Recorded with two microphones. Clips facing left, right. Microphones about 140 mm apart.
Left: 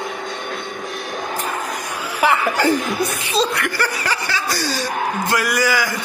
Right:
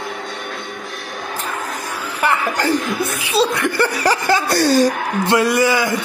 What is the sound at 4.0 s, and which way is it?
Chuckle, 45° right (ahead or behind).